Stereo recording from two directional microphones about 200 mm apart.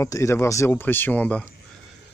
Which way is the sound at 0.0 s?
15° left (ahead or behind).